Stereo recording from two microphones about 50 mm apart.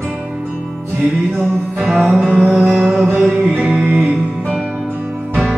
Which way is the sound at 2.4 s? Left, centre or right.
Centre.